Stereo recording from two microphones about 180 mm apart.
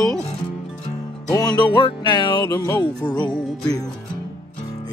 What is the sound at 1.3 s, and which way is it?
Music, 20° left (ahead or behind).